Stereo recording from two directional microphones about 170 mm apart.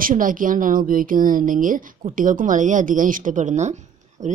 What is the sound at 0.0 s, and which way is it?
A woman's voice, 50° right (ahead or behind).